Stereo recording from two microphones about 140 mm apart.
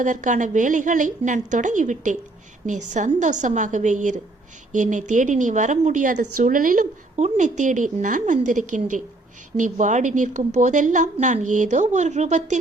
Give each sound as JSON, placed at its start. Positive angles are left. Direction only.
{"t": 0.0, "sound": "a woman's voice", "side_deg": -65}
{"t": 7.2, "sound": "a woman's voice", "side_deg": -60}